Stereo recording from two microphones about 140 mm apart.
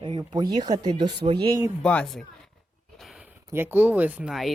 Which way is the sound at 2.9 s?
Centre (ahead or behind).